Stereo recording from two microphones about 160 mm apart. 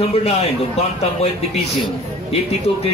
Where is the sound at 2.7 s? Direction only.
35° left (ahead or behind).